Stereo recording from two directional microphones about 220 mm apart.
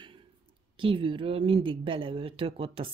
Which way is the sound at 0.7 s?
25° right (ahead or behind).